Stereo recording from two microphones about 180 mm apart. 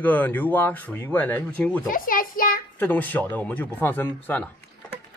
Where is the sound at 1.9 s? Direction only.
50° left (ahead or behind).